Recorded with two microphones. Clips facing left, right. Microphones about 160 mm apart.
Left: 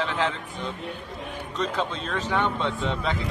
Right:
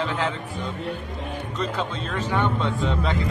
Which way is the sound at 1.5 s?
Centre (ahead or behind).